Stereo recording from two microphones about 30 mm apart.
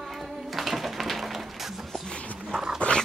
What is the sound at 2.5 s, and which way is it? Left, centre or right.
Dog, left.